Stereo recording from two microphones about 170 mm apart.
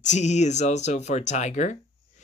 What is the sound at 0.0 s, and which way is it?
Speech, 45° left (ahead or behind).